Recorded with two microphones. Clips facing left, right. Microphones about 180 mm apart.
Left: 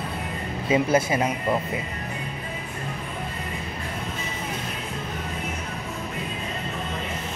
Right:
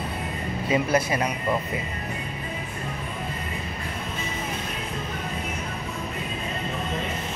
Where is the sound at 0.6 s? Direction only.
25° left (ahead or behind).